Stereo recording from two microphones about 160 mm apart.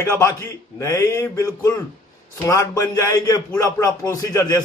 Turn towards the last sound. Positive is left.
turn(degrees=20)  # may be behind; listen again after turning